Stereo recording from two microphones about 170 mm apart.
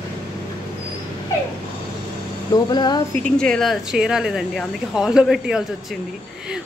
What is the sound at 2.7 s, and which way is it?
Speech, 25° left (ahead or behind).